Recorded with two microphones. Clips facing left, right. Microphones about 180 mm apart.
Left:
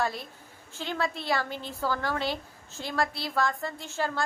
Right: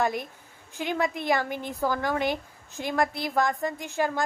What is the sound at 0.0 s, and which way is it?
A woman's voice, 15° right (ahead or behind).